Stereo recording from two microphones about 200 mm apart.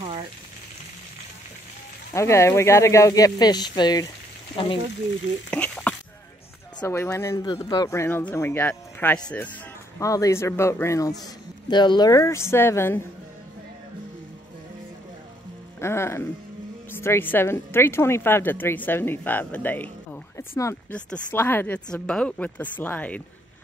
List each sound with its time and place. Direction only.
0.0 s frying: 30° right (ahead or behind)
2.1 s speech: 15° left (ahead or behind)
5.5 s a sound: 5° left (ahead or behind)
6.8 s speech: 10° left (ahead or behind)
15.8 s speech: 10° left (ahead or behind)